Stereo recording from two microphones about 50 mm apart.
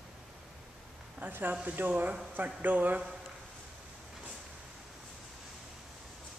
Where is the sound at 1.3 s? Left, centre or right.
Right.